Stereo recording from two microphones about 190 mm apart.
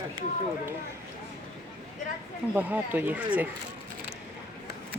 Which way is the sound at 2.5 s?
10° right (ahead or behind).